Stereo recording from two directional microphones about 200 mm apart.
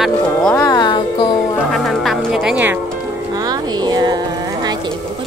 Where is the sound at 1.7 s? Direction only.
Centre (ahead or behind).